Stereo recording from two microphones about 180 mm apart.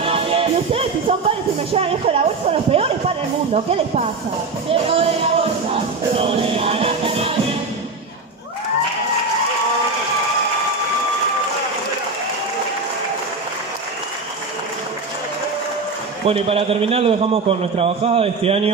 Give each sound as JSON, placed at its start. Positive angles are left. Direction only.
{"t": 0.0, "sound": "music", "side_deg": -30}
{"t": 1.7, "sound": "a man's voice", "side_deg": -30}
{"t": 6.1, "sound": "music", "side_deg": -30}
{"t": 16.3, "sound": "a man's voice", "side_deg": -30}